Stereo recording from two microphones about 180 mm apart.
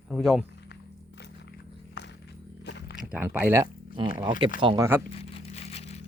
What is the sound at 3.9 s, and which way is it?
Speech, 30° right (ahead or behind).